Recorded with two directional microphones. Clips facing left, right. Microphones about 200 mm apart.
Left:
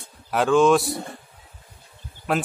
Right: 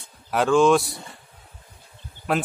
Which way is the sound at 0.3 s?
Centre (ahead or behind).